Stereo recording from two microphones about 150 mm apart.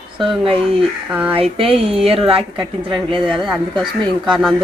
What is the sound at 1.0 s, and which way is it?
Speech, 10° right (ahead or behind).